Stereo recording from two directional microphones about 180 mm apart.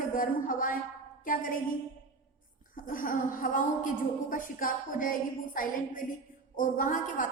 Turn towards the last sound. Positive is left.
turn(degrees=45)  # may be behind; listen again after turning